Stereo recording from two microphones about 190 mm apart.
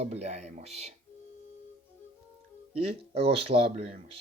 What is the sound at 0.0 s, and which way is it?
Speech, 35° right (ahead or behind).